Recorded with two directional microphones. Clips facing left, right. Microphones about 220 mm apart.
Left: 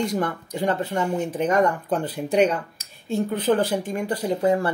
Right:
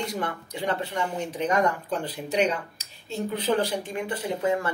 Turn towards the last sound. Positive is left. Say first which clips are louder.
# left 5 dB
turn(degrees=35)  # may be behind; listen again after turning